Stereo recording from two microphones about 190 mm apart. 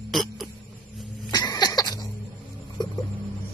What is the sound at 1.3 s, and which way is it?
Cough, 20° left (ahead or behind).